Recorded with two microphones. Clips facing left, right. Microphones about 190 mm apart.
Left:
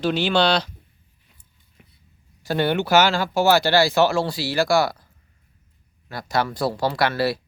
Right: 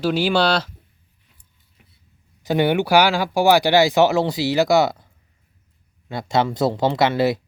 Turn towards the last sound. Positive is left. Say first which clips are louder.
# right 4 dB
turn(degrees=-20)  # may be behind; listen again after turning